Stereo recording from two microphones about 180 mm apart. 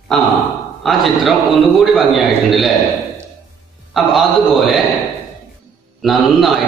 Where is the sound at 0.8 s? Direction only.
Centre (ahead or behind).